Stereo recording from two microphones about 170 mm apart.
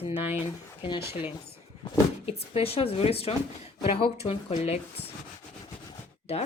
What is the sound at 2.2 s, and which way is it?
Speech, 35° left (ahead or behind).